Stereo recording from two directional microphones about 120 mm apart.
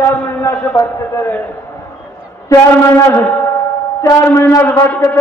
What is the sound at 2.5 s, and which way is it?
A man's voice, 20° left (ahead or behind).